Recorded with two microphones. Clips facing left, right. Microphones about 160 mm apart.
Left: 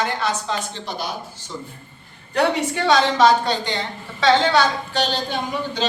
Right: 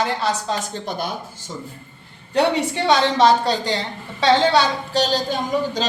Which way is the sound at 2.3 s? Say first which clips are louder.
Right 1 dB; 30° right (ahead or behind).